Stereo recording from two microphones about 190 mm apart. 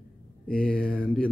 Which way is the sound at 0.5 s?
5° left (ahead or behind).